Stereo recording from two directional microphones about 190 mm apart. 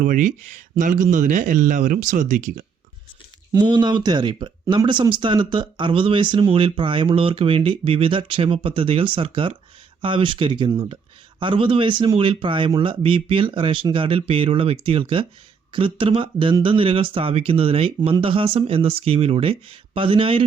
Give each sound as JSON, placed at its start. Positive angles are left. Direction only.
{"t": 0.0, "sound": "speech", "side_deg": -45}
{"t": 3.5, "sound": "speech", "side_deg": -20}